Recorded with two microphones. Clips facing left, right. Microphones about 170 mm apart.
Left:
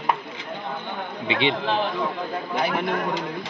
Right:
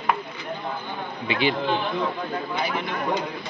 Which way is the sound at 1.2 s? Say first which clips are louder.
Even; 25° left (ahead or behind).